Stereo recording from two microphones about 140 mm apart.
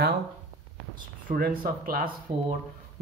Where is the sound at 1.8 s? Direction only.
90° right.